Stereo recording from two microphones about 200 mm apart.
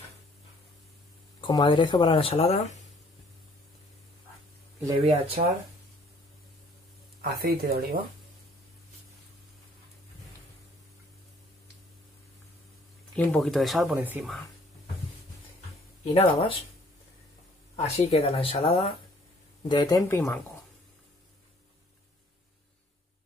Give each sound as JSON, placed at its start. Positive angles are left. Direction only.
{"t": 1.4, "sound": "speech", "side_deg": 25}
{"t": 5.0, "sound": "speech", "side_deg": -30}
{"t": 7.2, "sound": "speech", "side_deg": -50}
{"t": 13.1, "sound": "speech", "side_deg": 5}
{"t": 16.0, "sound": "speech", "side_deg": 30}
{"t": 17.7, "sound": "speech", "side_deg": 30}